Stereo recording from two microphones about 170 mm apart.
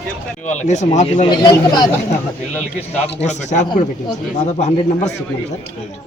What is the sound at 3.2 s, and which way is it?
Speech, 45° left (ahead or behind).